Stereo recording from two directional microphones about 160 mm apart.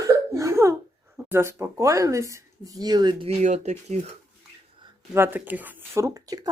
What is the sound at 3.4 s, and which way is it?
Speech, 45° right (ahead or behind).